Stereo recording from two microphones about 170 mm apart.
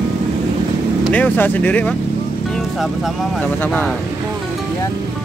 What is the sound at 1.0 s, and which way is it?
Speech, 10° left (ahead or behind).